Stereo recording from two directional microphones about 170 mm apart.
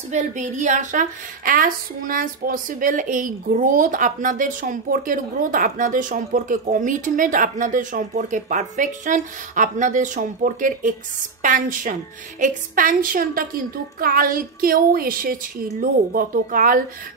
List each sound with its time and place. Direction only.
0.1 s a woman's voice: 45° right (ahead or behind)